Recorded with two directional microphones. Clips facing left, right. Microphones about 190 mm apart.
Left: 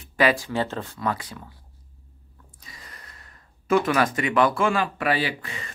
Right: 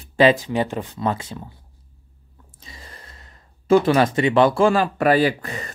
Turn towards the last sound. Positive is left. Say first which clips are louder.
# right 9 dB
turn(degrees=-40)  # may be behind; listen again after turning